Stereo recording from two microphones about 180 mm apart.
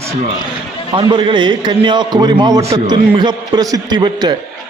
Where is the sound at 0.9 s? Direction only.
25° right (ahead or behind).